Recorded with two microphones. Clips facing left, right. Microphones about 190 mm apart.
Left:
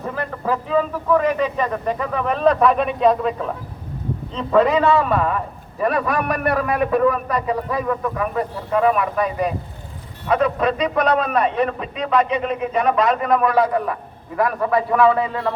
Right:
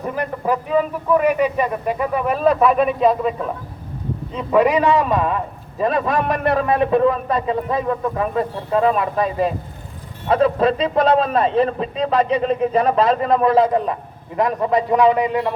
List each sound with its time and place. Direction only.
0.0 s a man's voice: 15° right (ahead or behind)
4.4 s a man's voice: 15° right (ahead or behind)